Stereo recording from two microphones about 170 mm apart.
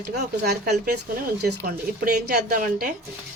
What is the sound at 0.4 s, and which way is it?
Speech, 70° right (ahead or behind).